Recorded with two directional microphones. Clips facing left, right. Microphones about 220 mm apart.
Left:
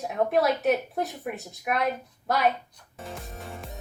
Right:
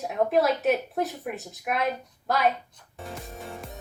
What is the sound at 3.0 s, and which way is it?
Music, centre (ahead or behind).